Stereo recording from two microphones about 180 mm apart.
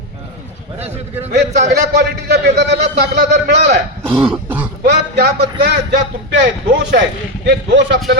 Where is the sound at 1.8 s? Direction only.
70° right (ahead or behind).